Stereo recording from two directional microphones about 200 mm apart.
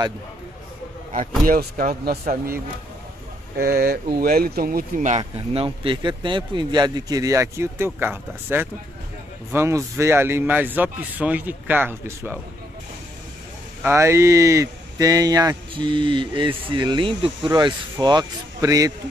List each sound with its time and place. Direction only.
1.4 s speech: 45° right (ahead or behind); by 12.4 s 10° right (ahead or behind)
13.8 s speech: 15° right (ahead or behind)